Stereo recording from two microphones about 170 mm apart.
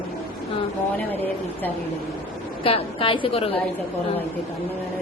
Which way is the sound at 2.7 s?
35° left (ahead or behind).